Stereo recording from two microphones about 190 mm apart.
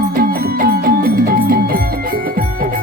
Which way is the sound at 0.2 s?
50° right (ahead or behind).